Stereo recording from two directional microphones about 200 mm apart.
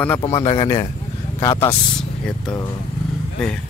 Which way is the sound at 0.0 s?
10° left (ahead or behind).